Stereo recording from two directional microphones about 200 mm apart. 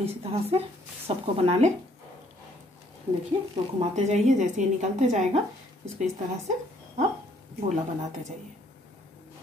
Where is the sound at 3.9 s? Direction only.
35° right (ahead or behind).